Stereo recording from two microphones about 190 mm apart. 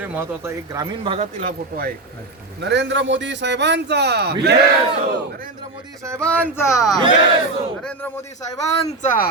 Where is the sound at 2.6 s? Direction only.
70° right (ahead or behind).